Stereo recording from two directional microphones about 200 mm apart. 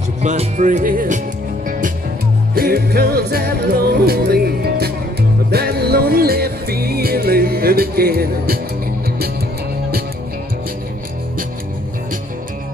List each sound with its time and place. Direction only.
0.2 s music: 35° right (ahead or behind)
2.5 s music: 50° right (ahead or behind)